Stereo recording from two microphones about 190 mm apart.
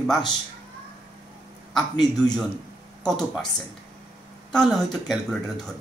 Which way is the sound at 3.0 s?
Centre (ahead or behind).